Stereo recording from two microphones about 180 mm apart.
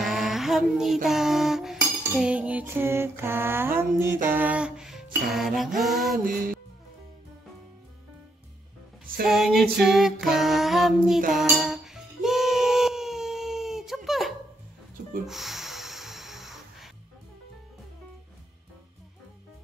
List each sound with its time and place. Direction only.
0.0 s child singing: centre (ahead or behind)
1.0 s cutlery: centre (ahead or behind)
4.3 s music: 10° right (ahead or behind)
6.2 s music: 50° right (ahead or behind)
9.0 s music: 55° right (ahead or behind)
9.3 s music: centre (ahead or behind)
15.2 s snort: centre (ahead or behind)